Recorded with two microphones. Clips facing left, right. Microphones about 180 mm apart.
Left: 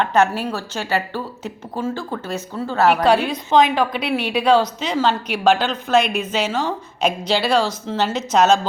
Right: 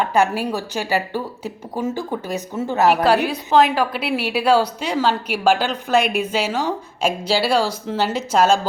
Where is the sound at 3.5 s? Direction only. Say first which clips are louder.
Even; 5° right (ahead or behind).